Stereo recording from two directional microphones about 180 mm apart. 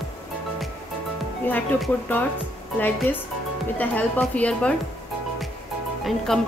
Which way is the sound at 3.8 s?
10° left (ahead or behind).